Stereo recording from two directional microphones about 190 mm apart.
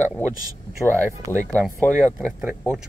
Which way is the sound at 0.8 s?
10° left (ahead or behind).